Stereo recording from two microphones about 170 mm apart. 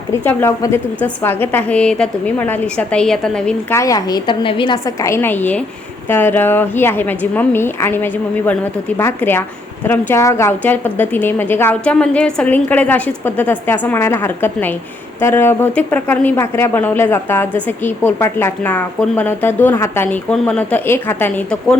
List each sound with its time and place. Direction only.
0.1 s a woman's voice: 15° left (ahead or behind)
3.8 s a woman's voice: 20° left (ahead or behind)